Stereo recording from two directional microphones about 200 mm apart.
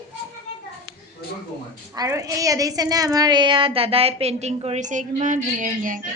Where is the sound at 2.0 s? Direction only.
15° right (ahead or behind); by 6.0 s 40° right (ahead or behind).